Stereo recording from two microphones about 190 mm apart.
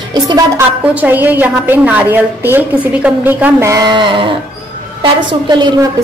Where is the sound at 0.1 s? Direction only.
20° right (ahead or behind).